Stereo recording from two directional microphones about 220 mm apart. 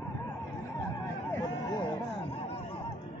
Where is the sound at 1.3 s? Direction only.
15° left (ahead or behind).